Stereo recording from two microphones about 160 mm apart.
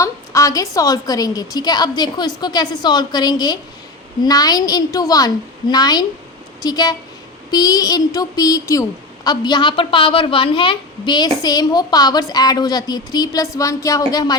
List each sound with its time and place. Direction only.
0.0 s a woman's voice: 20° left (ahead or behind)